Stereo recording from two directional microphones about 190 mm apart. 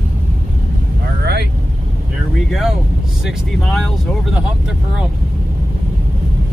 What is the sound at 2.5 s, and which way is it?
Vehicle, centre (ahead or behind).